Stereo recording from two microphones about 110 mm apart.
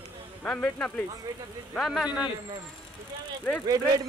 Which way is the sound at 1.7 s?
Centre (ahead or behind).